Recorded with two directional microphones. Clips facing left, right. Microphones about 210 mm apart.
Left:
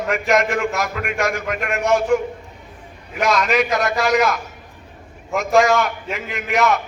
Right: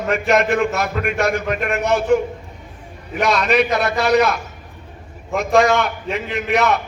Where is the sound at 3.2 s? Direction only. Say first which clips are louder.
Right 1 dB; 35° right (ahead or behind).